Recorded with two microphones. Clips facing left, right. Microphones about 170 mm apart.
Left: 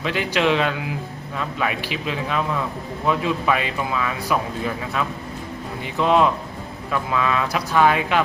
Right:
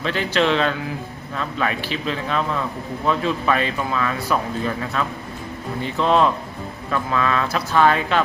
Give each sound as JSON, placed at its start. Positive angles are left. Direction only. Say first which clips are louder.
{"t": 0.0, "sound": "speech", "louder": "right 1 dB", "side_deg": 10}